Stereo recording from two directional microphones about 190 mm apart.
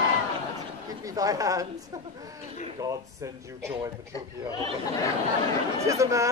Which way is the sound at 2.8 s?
15° right (ahead or behind).